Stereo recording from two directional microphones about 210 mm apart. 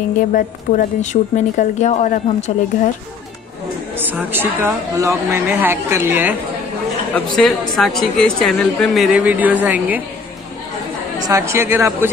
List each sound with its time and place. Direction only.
0.3 s a woman's voice: 40° left (ahead or behind)
3.9 s speech: 10° right (ahead or behind)
7.3 s a woman's voice: centre (ahead or behind)
11.2 s speech: 15° right (ahead or behind)